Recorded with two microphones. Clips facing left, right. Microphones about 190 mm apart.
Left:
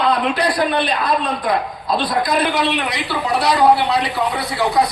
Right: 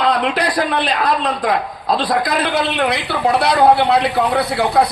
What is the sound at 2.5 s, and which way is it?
A man's voice, 55° right (ahead or behind).